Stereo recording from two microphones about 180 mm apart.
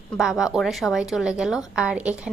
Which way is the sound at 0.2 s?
Centre (ahead or behind).